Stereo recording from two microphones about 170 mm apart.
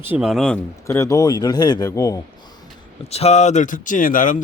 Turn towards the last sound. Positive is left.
turn(degrees=55)  # may be behind; listen again after turning